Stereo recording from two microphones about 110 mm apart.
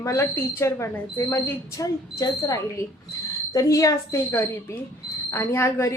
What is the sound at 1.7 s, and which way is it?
A woman's voice, 30° left (ahead or behind).